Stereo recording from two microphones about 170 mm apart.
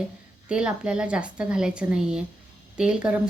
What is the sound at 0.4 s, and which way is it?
Speech, 5° right (ahead or behind).